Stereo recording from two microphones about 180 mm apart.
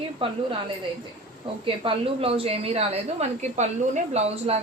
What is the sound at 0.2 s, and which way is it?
Speech, 30° right (ahead or behind).